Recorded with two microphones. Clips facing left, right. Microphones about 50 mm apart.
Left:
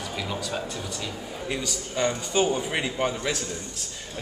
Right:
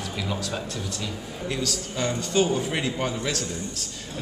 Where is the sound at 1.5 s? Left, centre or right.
Centre.